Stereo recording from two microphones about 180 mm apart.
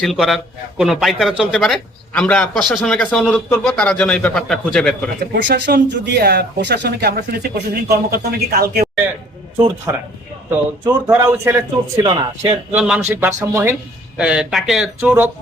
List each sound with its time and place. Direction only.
0.0 s a man's voice: centre (ahead or behind)
5.2 s speech: 70° right (ahead or behind)
9.9 s speech: 15° right (ahead or behind)
12.7 s a man's voice: 5° right (ahead or behind)